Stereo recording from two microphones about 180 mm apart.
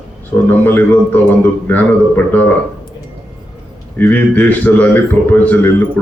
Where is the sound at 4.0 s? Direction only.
10° left (ahead or behind).